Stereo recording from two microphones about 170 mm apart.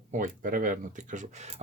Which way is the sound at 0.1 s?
50° right (ahead or behind).